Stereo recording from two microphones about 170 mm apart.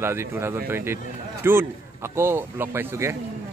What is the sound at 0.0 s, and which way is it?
A man's voice, 15° right (ahead or behind).